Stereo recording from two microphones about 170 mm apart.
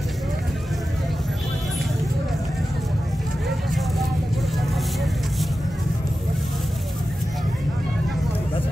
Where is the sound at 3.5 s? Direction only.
Centre (ahead or behind).